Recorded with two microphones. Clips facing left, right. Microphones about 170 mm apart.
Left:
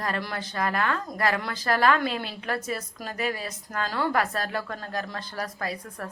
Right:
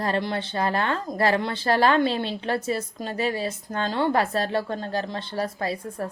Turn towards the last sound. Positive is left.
turn(degrees=-30)  # may be behind; listen again after turning